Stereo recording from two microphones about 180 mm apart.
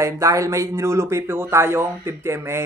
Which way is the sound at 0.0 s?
15° right (ahead or behind).